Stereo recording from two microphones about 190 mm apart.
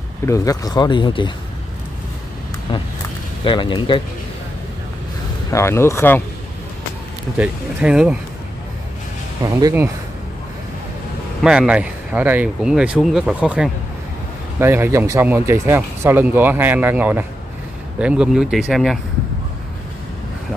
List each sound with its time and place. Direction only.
0.3 s speech: 20° left (ahead or behind)
2.7 s vehicle: 25° left (ahead or behind)
3.4 s speech: 25° left (ahead or behind)
5.5 s speech: 15° left (ahead or behind)
7.3 s speech: 5° right (ahead or behind)
9.4 s speech: 20° right (ahead or behind)
11.4 s speech: 5° right (ahead or behind)